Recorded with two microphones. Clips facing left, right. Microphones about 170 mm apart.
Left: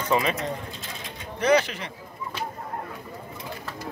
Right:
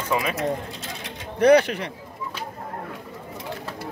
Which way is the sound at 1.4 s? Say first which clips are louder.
Right 6 dB; 60° right (ahead or behind).